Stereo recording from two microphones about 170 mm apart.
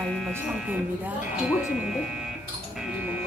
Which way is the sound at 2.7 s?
10° right (ahead or behind).